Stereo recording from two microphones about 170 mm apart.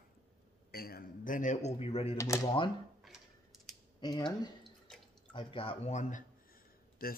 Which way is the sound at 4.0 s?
25° left (ahead or behind).